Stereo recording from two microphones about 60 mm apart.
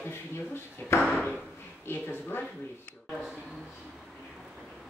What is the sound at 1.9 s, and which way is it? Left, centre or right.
Speech, left.